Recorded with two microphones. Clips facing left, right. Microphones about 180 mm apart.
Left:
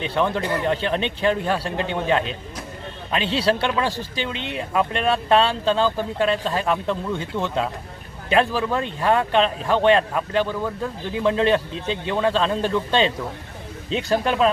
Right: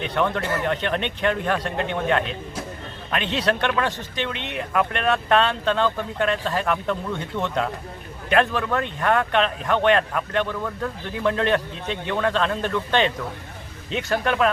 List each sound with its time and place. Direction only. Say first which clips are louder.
0.1 s speech: left 1 dB; 5° left (ahead or behind)
0.4 s speech: left 2 dB; 15° left (ahead or behind)
0.7 s speech: left 2 dB; 30° left (ahead or behind)
3.2 s speech: left 3 dB; 30° left (ahead or behind)
3.7 s speech: left 1 dB; 15° left (ahead or behind)
3.9 s speech: left 1 dB; 30° left (ahead or behind)
8.3 s speech: left 1 dB; 15° left (ahead or behind)
8.7 s speech: left 1 dB; 25° left (ahead or behind)
10.4 s speech: left 2 dB; 5° left (ahead or behind)
11.3 s speech: left 2 dB; 25° left (ahead or behind)